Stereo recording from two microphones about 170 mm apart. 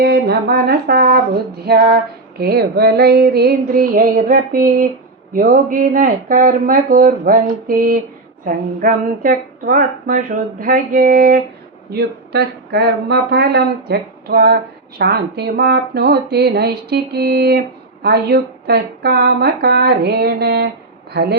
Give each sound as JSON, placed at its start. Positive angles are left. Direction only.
{"t": 0.0, "sound": "speech", "side_deg": -75}
{"t": 11.9, "sound": "speech", "side_deg": -70}